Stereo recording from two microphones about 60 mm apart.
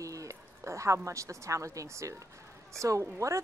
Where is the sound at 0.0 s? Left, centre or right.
Right.